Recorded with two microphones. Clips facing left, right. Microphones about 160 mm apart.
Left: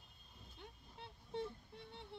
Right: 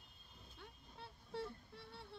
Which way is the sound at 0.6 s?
20° left (ahead or behind).